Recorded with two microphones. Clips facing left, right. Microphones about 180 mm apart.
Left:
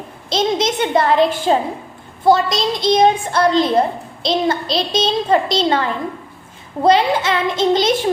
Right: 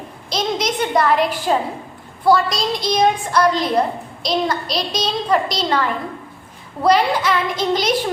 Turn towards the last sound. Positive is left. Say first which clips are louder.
# left 4 dB
turn(degrees=25)  # may be behind; listen again after turning